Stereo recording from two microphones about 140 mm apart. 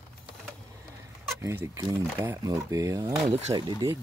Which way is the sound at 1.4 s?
20° right (ahead or behind).